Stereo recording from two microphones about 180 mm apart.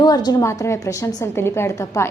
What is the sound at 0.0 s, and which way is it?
A woman's voice, 20° left (ahead or behind).